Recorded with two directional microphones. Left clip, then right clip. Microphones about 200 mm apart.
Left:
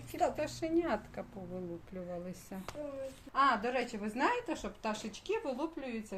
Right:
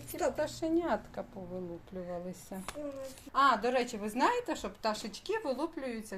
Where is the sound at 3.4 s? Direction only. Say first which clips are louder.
Right 3 dB; 35° right (ahead or behind).